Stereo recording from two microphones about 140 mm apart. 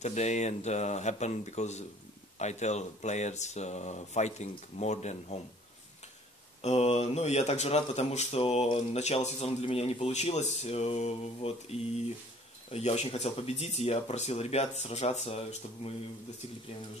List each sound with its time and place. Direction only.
0.0 s speech: 55° left (ahead or behind)
6.6 s speech: 45° left (ahead or behind)